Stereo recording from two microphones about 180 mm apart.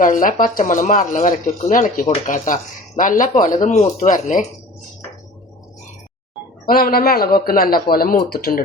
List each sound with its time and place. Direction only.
0.0 s speech: 50° left (ahead or behind)
6.7 s a man's voice: 55° left (ahead or behind)